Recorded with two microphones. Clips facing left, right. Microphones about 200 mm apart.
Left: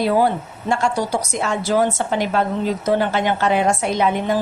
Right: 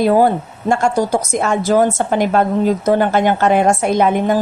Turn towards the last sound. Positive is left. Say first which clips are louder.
# right 5 dB
turn(degrees=-50)  # may be behind; listen again after turning